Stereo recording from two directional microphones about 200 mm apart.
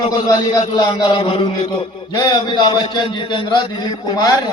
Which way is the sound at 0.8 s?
25° left (ahead or behind).